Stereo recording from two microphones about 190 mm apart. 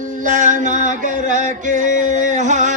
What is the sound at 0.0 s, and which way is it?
Music, 45° right (ahead or behind).